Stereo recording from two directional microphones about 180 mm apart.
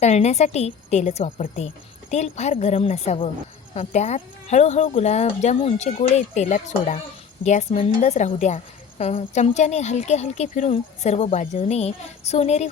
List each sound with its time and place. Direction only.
0.0 s a woman's voice: 40° left (ahead or behind)